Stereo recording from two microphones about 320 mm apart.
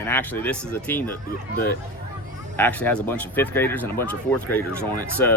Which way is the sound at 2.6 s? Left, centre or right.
Centre.